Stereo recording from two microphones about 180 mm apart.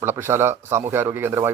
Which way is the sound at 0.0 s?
15° right (ahead or behind).